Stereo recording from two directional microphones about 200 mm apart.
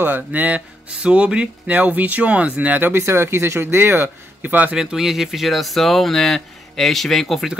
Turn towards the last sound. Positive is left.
turn(degrees=0)  # may be behind; listen again after turning